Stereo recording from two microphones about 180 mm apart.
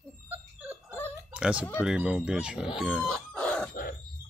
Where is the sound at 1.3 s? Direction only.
5° right (ahead or behind).